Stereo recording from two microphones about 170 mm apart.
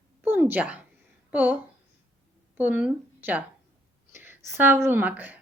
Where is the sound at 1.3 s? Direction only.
10° right (ahead or behind).